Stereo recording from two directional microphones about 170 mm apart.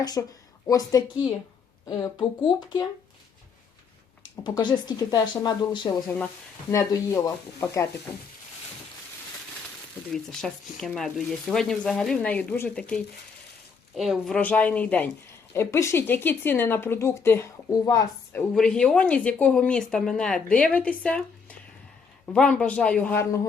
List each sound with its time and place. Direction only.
0.0 s speech: 25° left (ahead or behind)
4.4 s speech: 25° left (ahead or behind)
10.1 s speech: 5° left (ahead or behind); by 18.0 s 20° left (ahead or behind)
18.3 s speech: 5° left (ahead or behind)
22.3 s speech: 5° left (ahead or behind)